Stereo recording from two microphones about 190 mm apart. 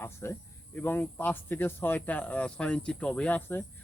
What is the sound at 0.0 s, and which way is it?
Speech, 15° left (ahead or behind).